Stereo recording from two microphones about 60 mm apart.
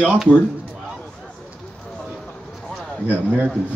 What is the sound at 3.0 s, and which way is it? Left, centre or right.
Speech, right.